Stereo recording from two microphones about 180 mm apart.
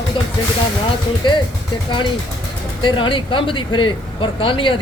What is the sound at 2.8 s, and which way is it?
A man's voice, 25° left (ahead or behind).